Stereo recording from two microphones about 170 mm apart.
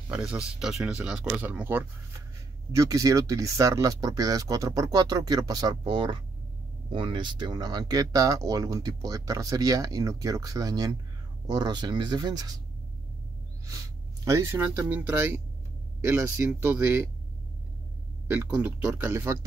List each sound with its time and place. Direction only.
0.1 s speech: 5° right (ahead or behind); by 12.5 s 25° right (ahead or behind)
13.7 s speech: 20° right (ahead or behind)
18.3 s speech: 10° right (ahead or behind)